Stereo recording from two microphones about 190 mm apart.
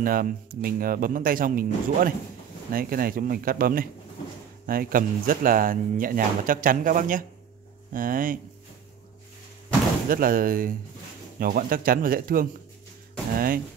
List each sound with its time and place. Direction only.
0.0 s speech: 50° right (ahead or behind)
10.0 s speech: 50° right (ahead or behind)